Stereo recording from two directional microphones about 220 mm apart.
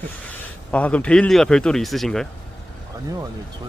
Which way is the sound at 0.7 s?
5° left (ahead or behind).